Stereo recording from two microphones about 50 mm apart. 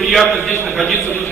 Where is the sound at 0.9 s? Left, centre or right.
Left.